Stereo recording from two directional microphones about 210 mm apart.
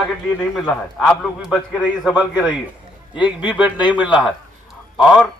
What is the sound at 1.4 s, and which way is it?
Speech, centre (ahead or behind).